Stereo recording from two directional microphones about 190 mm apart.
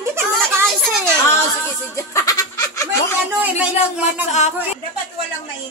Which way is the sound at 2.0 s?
15° left (ahead or behind).